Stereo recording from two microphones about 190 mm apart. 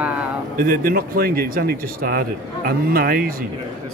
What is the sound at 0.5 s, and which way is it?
Speech, 50° right (ahead or behind).